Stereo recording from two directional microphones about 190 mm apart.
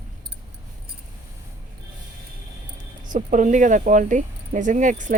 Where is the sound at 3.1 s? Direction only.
40° right (ahead or behind).